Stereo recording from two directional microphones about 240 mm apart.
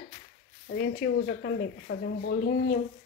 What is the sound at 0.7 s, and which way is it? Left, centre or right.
Speech, left.